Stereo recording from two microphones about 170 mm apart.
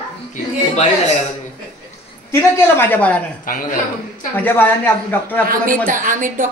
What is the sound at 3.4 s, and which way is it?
Speech, 55° left (ahead or behind).